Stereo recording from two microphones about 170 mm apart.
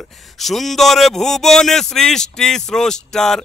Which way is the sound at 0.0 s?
Centre (ahead or behind).